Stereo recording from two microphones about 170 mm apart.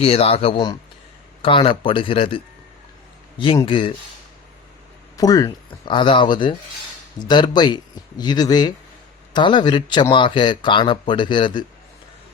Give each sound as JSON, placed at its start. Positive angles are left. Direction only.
{"t": 0.0, "sound": "speech", "side_deg": 35}
{"t": 5.1, "sound": "speech", "side_deg": 20}